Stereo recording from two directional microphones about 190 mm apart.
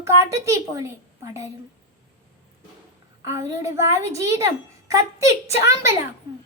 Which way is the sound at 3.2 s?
15° right (ahead or behind).